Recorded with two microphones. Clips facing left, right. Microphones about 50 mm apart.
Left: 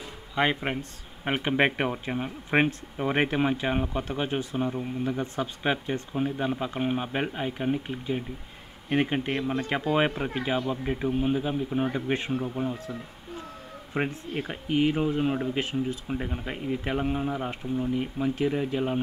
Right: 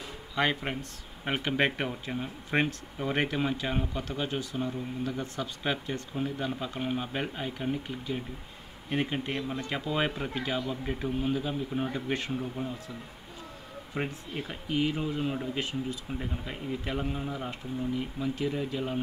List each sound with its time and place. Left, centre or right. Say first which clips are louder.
0.4 s speech: left 3 dB; centre; by 9.9 s left
9.9 s speech: left 3 dB; left
13.9 s speech: left 5 dB; left